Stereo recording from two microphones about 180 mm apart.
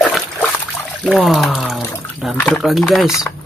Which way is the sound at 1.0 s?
Centre (ahead or behind).